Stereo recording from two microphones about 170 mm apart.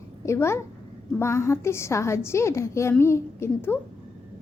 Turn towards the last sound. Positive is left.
turn(degrees=15)  # may be behind; listen again after turning